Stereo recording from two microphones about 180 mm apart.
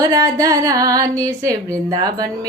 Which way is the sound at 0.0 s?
20° right (ahead or behind).